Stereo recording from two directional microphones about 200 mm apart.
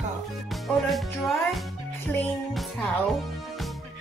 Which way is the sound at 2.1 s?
Centre (ahead or behind).